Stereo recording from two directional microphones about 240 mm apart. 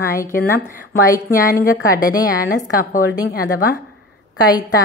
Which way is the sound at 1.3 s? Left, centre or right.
Left.